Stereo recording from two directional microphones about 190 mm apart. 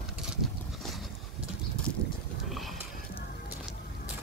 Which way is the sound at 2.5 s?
Centre (ahead or behind).